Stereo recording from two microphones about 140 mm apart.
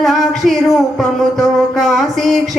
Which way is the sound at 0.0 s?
Centre (ahead or behind).